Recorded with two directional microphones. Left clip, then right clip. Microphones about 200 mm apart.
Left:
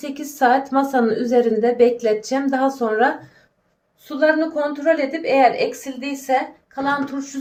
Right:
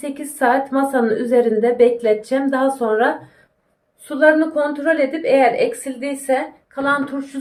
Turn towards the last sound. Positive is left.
turn(degrees=-10)  # may be behind; listen again after turning